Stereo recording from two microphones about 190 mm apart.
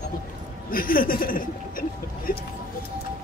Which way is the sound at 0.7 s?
50° left (ahead or behind).